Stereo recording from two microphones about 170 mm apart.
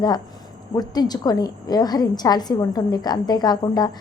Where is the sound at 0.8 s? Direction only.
25° left (ahead or behind).